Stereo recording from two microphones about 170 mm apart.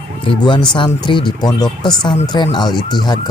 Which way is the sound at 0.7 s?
30° left (ahead or behind).